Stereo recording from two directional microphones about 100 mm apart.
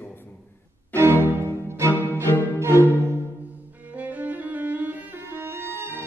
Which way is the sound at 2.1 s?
25° left (ahead or behind).